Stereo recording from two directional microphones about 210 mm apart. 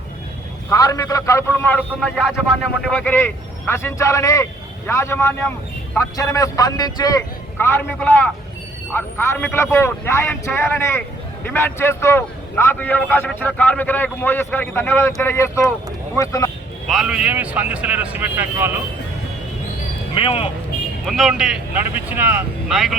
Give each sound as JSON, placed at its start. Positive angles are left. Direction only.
{"t": 0.7, "sound": "a man's voice", "side_deg": 15}
{"t": 16.9, "sound": "speech", "side_deg": -5}
{"t": 20.1, "sound": "speech", "side_deg": 25}
{"t": 21.0, "sound": "speech", "side_deg": 0}